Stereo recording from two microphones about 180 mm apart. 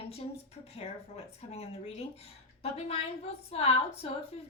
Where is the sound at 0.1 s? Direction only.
35° left (ahead or behind).